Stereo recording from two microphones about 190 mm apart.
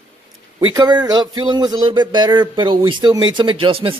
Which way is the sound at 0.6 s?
25° right (ahead or behind).